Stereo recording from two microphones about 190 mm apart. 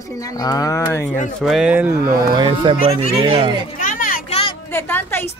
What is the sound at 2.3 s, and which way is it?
Speech, 25° right (ahead or behind).